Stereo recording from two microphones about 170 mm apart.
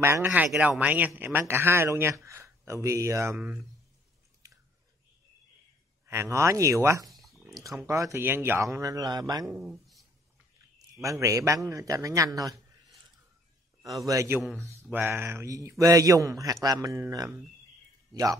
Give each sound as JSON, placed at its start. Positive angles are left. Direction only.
{"t": 0.0, "sound": "a man's voice", "side_deg": -15}
{"t": 6.0, "sound": "a man's voice", "side_deg": -15}
{"t": 7.1, "sound": "a sound", "side_deg": 0}
{"t": 7.6, "sound": "a man's voice", "side_deg": -20}
{"t": 9.5, "sound": "speech", "side_deg": -5}
{"t": 11.0, "sound": "speech", "side_deg": -20}
{"t": 13.8, "sound": "speech", "side_deg": -20}